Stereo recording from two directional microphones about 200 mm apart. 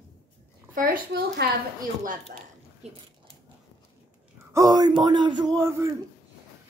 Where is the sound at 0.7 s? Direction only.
45° right (ahead or behind).